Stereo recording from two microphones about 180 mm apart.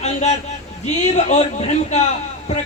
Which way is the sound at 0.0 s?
40° left (ahead or behind).